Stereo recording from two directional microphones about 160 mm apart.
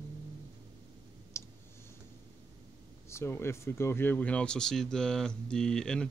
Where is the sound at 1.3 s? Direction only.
15° left (ahead or behind).